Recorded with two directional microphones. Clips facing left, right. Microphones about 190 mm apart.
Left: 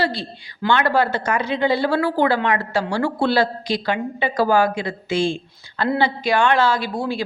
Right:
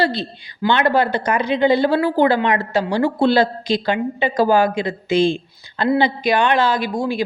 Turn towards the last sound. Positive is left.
turn(degrees=-15)  # may be behind; listen again after turning